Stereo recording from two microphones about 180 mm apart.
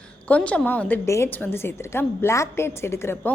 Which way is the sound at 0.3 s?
5° left (ahead or behind).